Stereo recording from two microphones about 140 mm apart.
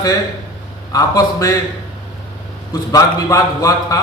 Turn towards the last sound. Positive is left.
turn(degrees=25)  # may be behind; listen again after turning